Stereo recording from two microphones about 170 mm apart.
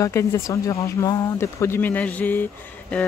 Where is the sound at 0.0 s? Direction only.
15° left (ahead or behind).